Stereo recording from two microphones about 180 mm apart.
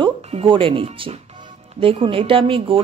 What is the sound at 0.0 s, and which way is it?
Speech, 30° right (ahead or behind).